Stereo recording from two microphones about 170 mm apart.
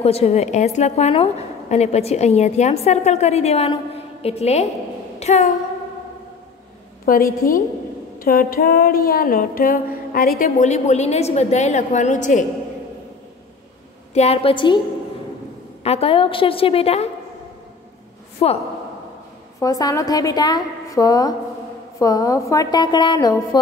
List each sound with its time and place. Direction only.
0.0 s a woman's voice: 35° left (ahead or behind)
7.1 s a sound: 60° left (ahead or behind)
10.7 s a woman's voice: 40° left (ahead or behind)
14.1 s a woman's voice: 35° left (ahead or behind)
15.8 s a woman's voice: 35° left (ahead or behind)
18.4 s a woman's voice: 35° left (ahead or behind)
19.6 s a woman's voice: 20° left (ahead or behind)